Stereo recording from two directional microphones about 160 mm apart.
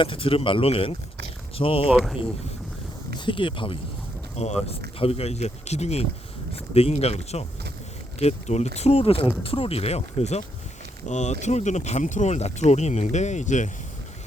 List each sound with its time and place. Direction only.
0.0 s speech: 35° left (ahead or behind)
1.9 s speech: centre (ahead or behind)
3.2 s speech: 30° left (ahead or behind); by 13.7 s 50° left (ahead or behind)